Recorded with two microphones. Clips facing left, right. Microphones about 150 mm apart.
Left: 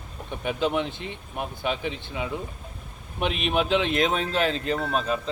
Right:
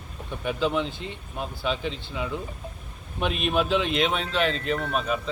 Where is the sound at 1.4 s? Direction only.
15° left (ahead or behind).